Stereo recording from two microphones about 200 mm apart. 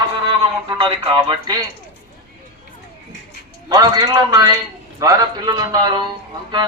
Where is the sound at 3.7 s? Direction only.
20° right (ahead or behind).